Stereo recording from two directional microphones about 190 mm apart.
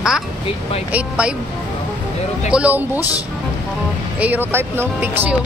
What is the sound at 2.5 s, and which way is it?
Speech, 5° right (ahead or behind).